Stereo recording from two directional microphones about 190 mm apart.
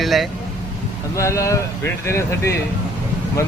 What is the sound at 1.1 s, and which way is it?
Speech, 15° left (ahead or behind).